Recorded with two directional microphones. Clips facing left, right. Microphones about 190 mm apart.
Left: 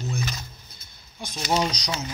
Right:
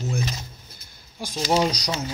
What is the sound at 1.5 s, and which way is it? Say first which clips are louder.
Speech: right 3 dB; 25° right (ahead or behind).